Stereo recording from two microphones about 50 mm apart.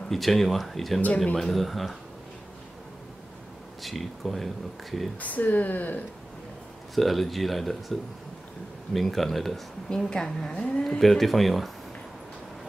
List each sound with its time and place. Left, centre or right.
0.1 s speech: centre
3.8 s speech: centre
5.2 s speech: left
7.0 s a woman's voice: centre
10.8 s speech: centre